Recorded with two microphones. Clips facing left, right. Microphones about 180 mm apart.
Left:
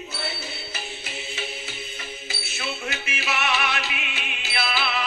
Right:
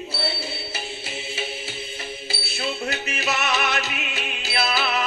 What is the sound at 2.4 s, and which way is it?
Music, 35° right (ahead or behind).